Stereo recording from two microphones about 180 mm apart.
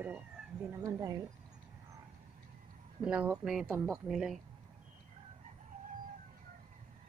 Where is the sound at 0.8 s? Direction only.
20° right (ahead or behind).